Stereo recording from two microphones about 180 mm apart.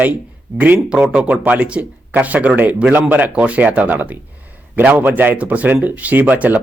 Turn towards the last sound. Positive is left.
turn(degrees=-10)  # may be behind; listen again after turning